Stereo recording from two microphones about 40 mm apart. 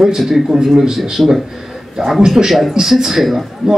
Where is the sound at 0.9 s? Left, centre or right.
Centre.